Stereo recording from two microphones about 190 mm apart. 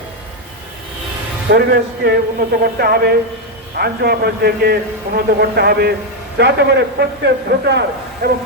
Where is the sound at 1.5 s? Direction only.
55° right (ahead or behind).